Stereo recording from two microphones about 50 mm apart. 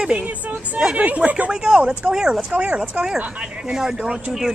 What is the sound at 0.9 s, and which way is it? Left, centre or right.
Speech, right.